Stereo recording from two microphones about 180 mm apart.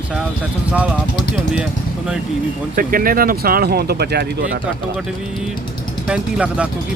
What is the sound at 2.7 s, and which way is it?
Speech, 50° right (ahead or behind).